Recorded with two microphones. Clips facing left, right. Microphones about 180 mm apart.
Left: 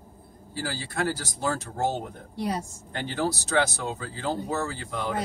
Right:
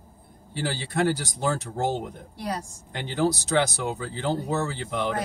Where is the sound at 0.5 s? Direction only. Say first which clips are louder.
Right 4 dB; 20° right (ahead or behind).